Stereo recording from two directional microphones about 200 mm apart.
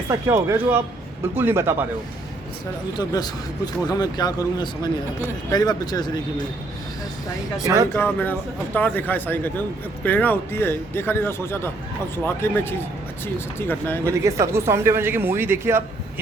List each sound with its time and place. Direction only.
0.1 s speech: 15° right (ahead or behind)
3.0 s speech: 20° left (ahead or behind)
7.9 s speech: 10° left (ahead or behind)
14.0 s speech: 15° right (ahead or behind)